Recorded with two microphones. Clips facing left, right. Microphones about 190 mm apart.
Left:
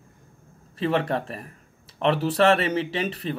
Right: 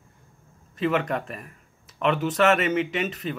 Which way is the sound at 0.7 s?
30° left (ahead or behind).